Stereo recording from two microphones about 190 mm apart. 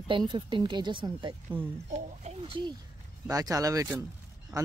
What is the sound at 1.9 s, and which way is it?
Speech, 35° right (ahead or behind).